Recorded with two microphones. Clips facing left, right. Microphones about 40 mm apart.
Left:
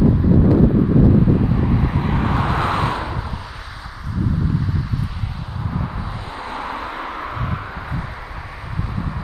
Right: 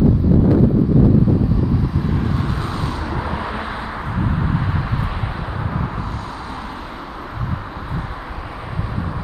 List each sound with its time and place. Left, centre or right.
2.2 s vehicle: left